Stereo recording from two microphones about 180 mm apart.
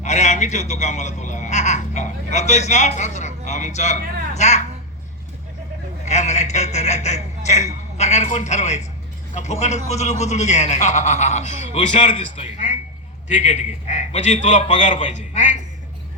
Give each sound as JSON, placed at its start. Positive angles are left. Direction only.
{"t": 0.0, "sound": "a man's voice", "side_deg": 40}
{"t": 6.1, "sound": "a man's voice", "side_deg": 40}